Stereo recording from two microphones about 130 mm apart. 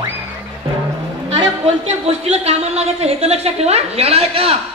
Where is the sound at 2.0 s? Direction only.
50° right (ahead or behind).